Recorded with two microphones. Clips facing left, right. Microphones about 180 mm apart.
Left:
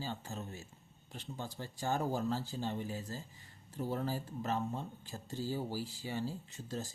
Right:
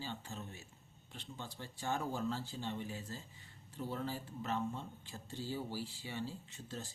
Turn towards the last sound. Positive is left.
turn(degrees=40)  # may be behind; listen again after turning